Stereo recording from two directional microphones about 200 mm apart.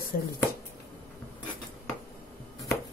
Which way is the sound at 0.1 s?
45° left (ahead or behind).